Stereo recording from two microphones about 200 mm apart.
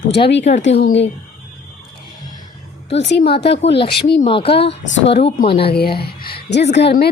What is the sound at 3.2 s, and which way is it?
Speech, 30° left (ahead or behind).